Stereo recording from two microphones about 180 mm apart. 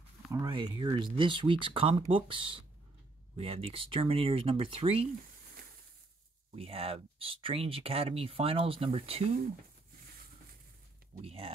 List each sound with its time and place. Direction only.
0.3 s speech: 25° right (ahead or behind)
6.5 s speech: 30° right (ahead or behind)
11.2 s speech: 30° right (ahead or behind)